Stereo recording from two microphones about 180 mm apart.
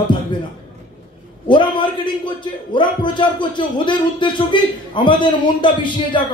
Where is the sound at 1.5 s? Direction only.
25° left (ahead or behind).